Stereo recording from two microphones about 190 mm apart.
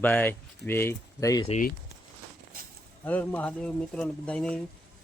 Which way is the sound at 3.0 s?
10° left (ahead or behind).